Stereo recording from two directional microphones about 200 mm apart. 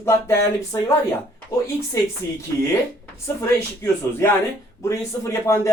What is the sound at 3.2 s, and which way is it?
Speech, 15° left (ahead or behind).